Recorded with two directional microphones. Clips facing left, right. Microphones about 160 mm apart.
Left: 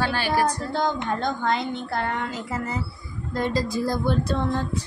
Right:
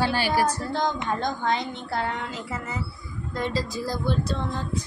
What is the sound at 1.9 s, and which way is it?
Speech, 55° left (ahead or behind).